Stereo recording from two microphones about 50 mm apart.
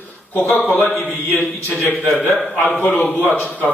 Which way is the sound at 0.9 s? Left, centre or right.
Left.